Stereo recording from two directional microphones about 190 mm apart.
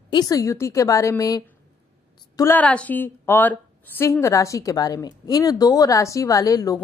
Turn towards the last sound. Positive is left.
turn(degrees=20)  # may be behind; listen again after turning